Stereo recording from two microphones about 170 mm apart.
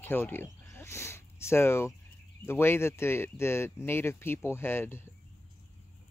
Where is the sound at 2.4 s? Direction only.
15° left (ahead or behind).